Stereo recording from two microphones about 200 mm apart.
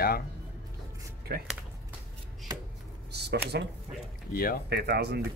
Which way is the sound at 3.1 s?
55° right (ahead or behind).